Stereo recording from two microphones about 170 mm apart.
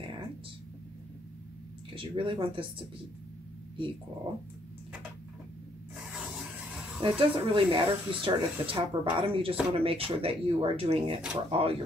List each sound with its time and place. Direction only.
2.0 s speech: 30° right (ahead or behind)
6.1 s rub: 5° right (ahead or behind)
7.0 s speech: 30° right (ahead or behind)